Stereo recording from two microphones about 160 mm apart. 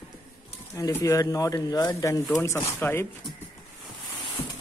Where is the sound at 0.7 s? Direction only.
20° left (ahead or behind).